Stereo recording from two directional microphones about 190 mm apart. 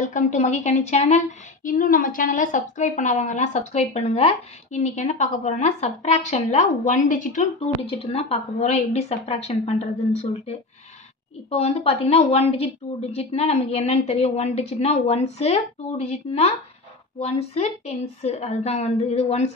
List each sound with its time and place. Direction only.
0.0 s a woman's voice: 40° left (ahead or behind)
7.8 s a woman's voice: 30° left (ahead or behind)
11.5 s a woman's voice: 35° left (ahead or behind)